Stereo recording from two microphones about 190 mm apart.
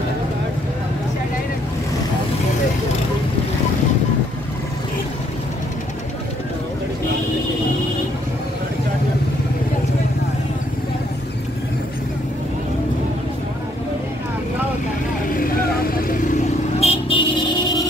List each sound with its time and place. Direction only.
15.3 s vehicle: 50° left (ahead or behind)
16.8 s vehicle: 30° left (ahead or behind)